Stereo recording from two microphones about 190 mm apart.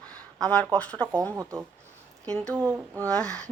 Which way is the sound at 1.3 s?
15° right (ahead or behind).